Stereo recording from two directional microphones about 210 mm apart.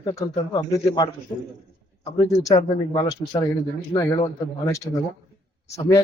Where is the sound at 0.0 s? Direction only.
20° left (ahead or behind).